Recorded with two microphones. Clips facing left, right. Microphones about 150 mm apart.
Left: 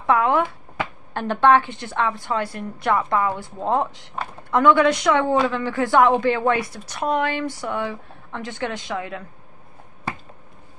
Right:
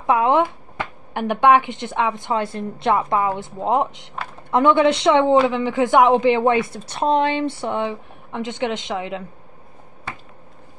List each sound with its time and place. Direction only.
0.0 s a woman's voice: 20° right (ahead or behind)